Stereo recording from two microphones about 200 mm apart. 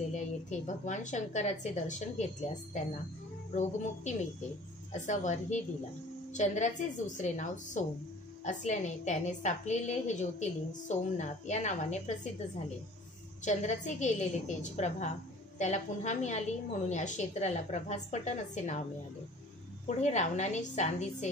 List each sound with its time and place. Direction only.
0.1 s a woman's voice: 35° left (ahead or behind)
13.4 s a woman's voice: 35° left (ahead or behind)
20.0 s a woman's voice: 35° left (ahead or behind)